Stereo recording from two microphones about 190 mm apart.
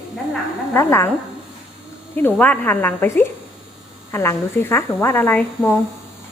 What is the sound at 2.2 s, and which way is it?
Speech, 10° left (ahead or behind).